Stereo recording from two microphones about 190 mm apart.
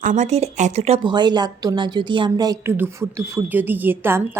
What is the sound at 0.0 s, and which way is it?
Speech, 40° right (ahead or behind).